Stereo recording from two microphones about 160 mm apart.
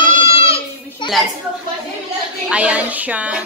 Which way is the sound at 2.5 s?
10° right (ahead or behind).